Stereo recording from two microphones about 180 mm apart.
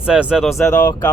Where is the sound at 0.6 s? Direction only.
15° left (ahead or behind).